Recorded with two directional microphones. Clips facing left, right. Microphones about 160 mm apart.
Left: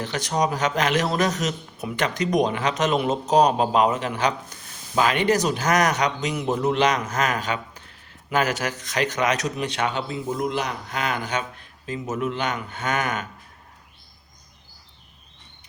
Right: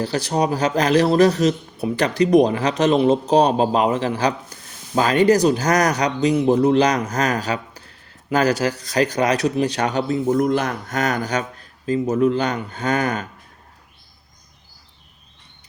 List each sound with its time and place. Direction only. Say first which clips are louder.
0.0 s a man's voice: right 4 dB; 35° right (ahead or behind)
10.2 s a man's voice: right 7 dB; 50° right (ahead or behind); by 13.2 s 35° right (ahead or behind)